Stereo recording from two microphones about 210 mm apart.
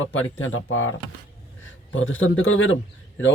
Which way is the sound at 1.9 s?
65° left (ahead or behind).